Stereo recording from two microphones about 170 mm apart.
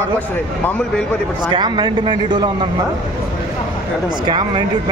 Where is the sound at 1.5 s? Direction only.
25° right (ahead or behind).